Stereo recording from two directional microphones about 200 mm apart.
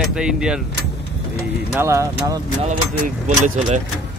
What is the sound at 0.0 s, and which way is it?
Speech, 5° right (ahead or behind).